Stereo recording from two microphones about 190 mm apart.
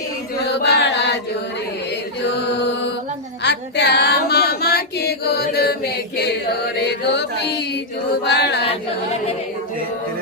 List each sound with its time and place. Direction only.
0.4 s chant: 65° left (ahead or behind)
3.4 s female singing: 65° left (ahead or behind)
6.7 s mantra: 65° left (ahead or behind)